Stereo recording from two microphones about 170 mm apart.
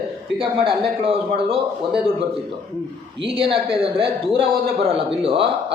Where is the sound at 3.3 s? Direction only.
30° right (ahead or behind).